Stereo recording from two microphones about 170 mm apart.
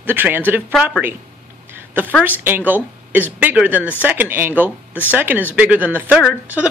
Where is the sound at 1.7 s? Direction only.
10° right (ahead or behind).